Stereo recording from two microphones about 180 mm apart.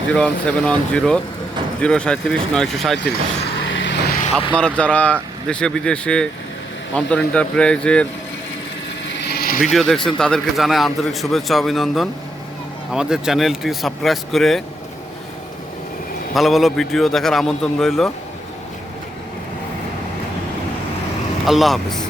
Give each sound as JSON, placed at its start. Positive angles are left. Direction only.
{"t": 0.1, "sound": "a man's voice", "side_deg": 5}
{"t": 3.6, "sound": "vehicle", "side_deg": 90}
{"t": 4.5, "sound": "a man's voice", "side_deg": 5}
{"t": 9.3, "sound": "a sound", "side_deg": 55}
{"t": 9.7, "sound": "a man's voice", "side_deg": 5}
{"t": 16.3, "sound": "a man's voice", "side_deg": 0}
{"t": 21.4, "sound": "a man's voice", "side_deg": 0}